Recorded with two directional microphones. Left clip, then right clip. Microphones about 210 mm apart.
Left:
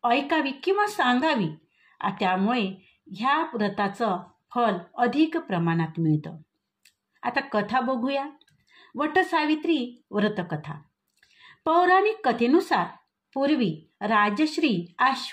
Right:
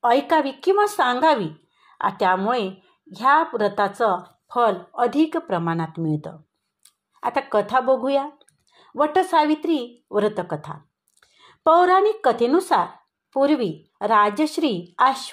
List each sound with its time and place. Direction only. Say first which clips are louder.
0.0 s a woman's voice: right 5 dB; 25° right (ahead or behind)
6.8 s a woman's voice: right 6 dB; 25° right (ahead or behind)